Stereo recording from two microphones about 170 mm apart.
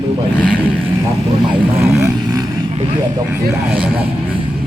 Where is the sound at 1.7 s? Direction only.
15° right (ahead or behind).